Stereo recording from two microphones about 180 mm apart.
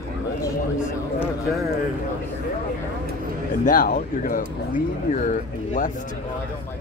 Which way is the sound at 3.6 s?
50° left (ahead or behind).